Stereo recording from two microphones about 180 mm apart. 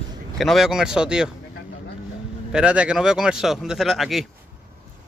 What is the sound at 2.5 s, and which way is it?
Speech, 5° right (ahead or behind).